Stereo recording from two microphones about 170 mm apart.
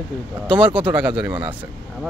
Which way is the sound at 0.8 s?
10° right (ahead or behind).